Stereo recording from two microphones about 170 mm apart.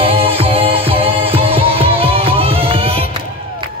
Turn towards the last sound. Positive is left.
turn(degrees=-35)  # may be behind; listen again after turning